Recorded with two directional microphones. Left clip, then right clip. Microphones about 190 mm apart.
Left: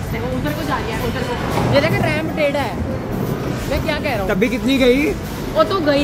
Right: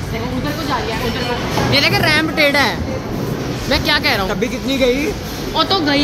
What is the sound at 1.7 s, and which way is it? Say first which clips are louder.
Speech: right 4 dB; 65° right (ahead or behind).